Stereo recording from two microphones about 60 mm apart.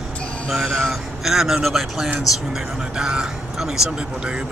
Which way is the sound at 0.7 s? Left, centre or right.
Centre.